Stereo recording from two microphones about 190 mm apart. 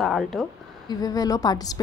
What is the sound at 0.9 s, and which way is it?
Speech, 20° left (ahead or behind).